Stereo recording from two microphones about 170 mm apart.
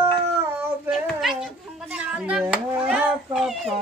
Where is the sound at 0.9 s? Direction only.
Centre (ahead or behind).